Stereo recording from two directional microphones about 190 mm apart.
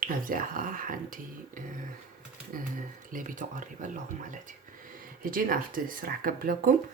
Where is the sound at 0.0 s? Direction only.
45° right (ahead or behind).